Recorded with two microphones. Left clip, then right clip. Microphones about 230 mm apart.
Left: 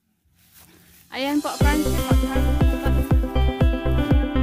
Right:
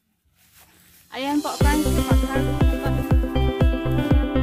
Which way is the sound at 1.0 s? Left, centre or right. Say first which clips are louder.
Even; left.